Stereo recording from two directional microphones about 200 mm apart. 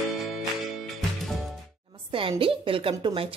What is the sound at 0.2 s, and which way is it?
Music, centre (ahead or behind).